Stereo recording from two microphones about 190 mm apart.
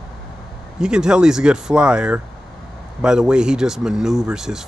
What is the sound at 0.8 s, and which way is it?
Speech, 5° right (ahead or behind).